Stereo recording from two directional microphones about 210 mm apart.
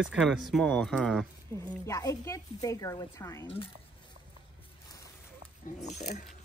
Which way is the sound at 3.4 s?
25° left (ahead or behind).